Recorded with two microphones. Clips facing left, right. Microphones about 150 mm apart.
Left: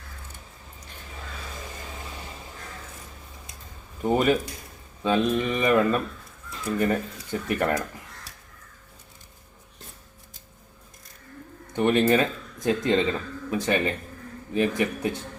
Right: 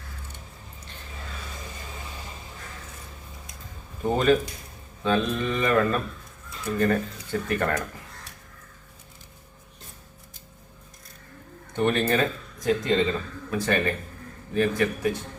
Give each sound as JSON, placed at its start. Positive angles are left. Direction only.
{"t": 4.0, "sound": "speech", "side_deg": 15}
{"t": 11.8, "sound": "speech", "side_deg": 15}